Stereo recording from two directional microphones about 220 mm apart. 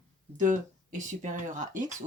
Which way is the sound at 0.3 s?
35° right (ahead or behind).